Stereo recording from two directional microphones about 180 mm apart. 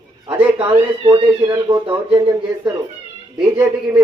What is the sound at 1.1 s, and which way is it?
Speech, 30° right (ahead or behind).